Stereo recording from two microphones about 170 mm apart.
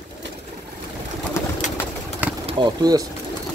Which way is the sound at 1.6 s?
45° left (ahead or behind).